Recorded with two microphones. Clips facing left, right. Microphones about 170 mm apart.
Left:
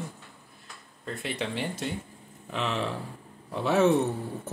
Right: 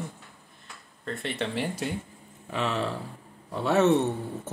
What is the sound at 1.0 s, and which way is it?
Speech, centre (ahead or behind).